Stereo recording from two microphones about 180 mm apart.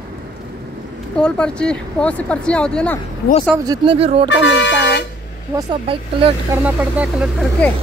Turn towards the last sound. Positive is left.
turn(degrees=5)  # may be behind; listen again after turning